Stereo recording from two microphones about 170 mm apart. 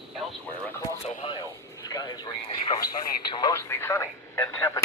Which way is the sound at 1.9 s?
25° left (ahead or behind).